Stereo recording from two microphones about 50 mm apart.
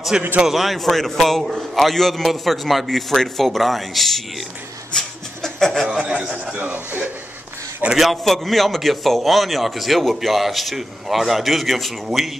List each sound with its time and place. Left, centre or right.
0.1 s a man's voice: centre
0.5 s a man's voice: centre
4.9 s a sound: centre
5.7 s chuckle: centre
6.2 s a sound: centre
6.5 s speech: right
7.9 s a man's voice: centre